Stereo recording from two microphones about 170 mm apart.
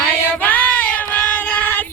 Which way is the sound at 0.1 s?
10° left (ahead or behind).